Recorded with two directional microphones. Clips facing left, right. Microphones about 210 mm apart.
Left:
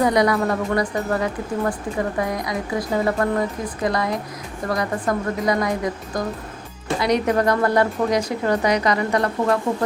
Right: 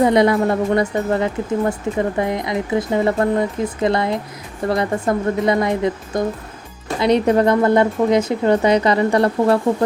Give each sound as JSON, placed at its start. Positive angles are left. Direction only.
{"t": 0.0, "sound": "a woman's voice", "side_deg": -25}